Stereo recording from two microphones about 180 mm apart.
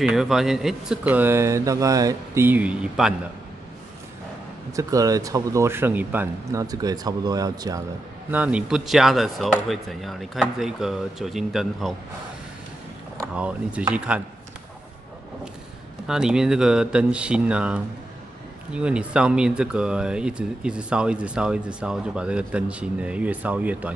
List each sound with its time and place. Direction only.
0.0 s speech: 5° right (ahead or behind)
4.7 s speech: 20° right (ahead or behind)
8.3 s speech: 10° right (ahead or behind)
13.2 s speech: 5° right (ahead or behind)
16.1 s speech: 5° right (ahead or behind)